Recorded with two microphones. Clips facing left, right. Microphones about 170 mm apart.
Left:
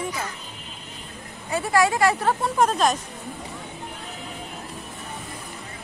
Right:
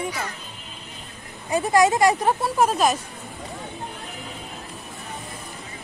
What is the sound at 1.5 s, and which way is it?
Speech, 20° right (ahead or behind).